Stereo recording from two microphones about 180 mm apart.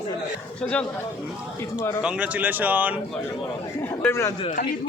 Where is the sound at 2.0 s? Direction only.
5° right (ahead or behind).